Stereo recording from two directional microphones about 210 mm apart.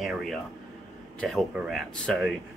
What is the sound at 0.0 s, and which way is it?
Speech, centre (ahead or behind).